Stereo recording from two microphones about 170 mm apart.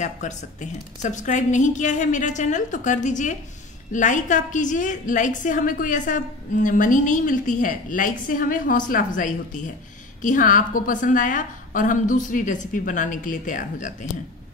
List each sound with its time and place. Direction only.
0.0 s a woman's voice: 45° left (ahead or behind)